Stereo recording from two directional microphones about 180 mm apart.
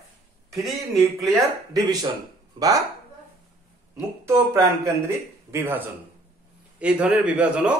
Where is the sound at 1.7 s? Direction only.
20° right (ahead or behind).